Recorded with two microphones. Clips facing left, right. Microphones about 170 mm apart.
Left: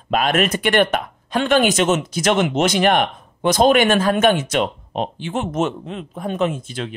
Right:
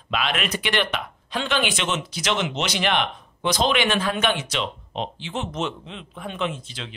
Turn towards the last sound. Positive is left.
turn(degrees=50)  # may be behind; listen again after turning